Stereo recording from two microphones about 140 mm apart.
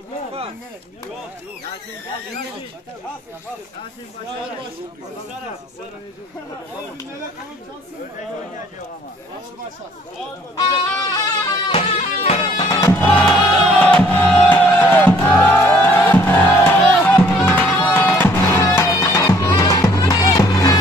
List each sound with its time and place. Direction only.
10.6 s music: 25° left (ahead or behind)
11.7 s music: 45° left (ahead or behind)
12.6 s music: 25° left (ahead or behind)
13.0 s music: 10° left (ahead or behind)